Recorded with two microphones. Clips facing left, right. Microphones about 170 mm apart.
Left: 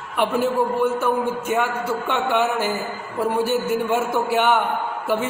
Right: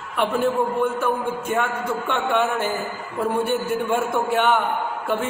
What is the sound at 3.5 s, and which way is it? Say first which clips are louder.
Speech: left 1 dB; 5° left (ahead or behind).